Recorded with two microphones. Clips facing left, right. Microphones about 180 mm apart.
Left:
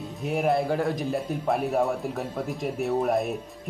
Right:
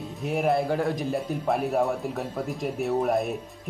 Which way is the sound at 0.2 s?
Centre (ahead or behind).